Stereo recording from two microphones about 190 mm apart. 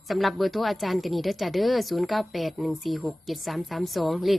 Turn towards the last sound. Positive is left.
turn(degrees=0)  # may be behind; listen again after turning